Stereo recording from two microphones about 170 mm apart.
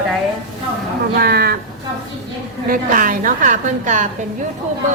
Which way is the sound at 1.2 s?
65° right (ahead or behind).